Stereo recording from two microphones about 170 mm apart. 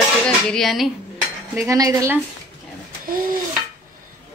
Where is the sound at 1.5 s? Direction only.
20° right (ahead or behind).